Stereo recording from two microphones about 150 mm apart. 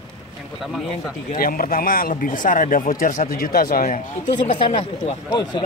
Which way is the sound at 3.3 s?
75° left (ahead or behind).